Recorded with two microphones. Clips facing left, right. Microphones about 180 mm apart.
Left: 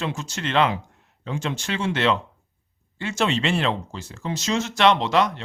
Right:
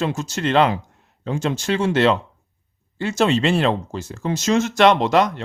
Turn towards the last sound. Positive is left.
turn(degrees=-45)  # may be behind; listen again after turning